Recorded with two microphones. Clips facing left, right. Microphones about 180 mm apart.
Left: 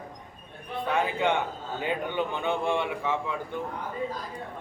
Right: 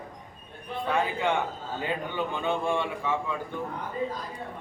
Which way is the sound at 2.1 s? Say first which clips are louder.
Left 1 dB; 20° left (ahead or behind).